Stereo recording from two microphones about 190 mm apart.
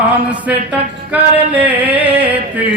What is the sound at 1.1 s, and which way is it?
Male singing, 10° right (ahead or behind).